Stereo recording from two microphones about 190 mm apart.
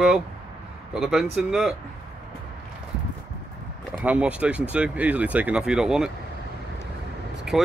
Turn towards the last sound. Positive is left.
turn(degrees=0)  # may be behind; listen again after turning